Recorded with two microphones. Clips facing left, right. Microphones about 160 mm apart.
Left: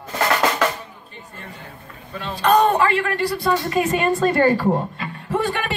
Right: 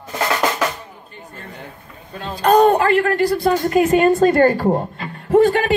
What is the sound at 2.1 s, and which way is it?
A man's voice, 45° right (ahead or behind).